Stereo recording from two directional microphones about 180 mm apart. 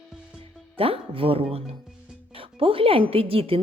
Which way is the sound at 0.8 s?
30° right (ahead or behind).